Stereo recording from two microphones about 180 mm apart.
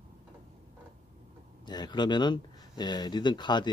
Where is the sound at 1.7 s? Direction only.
25° left (ahead or behind).